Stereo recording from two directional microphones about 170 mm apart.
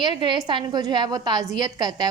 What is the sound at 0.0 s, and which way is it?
A woman's voice, 30° right (ahead or behind).